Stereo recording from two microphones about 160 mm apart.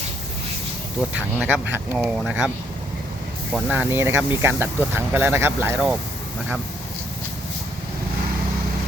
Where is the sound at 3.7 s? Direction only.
15° right (ahead or behind).